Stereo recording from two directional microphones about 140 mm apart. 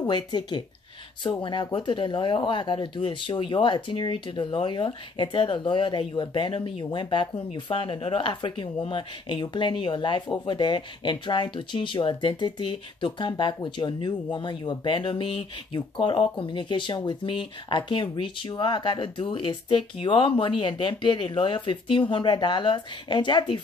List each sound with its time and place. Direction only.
0.0 s speech: 30° left (ahead or behind)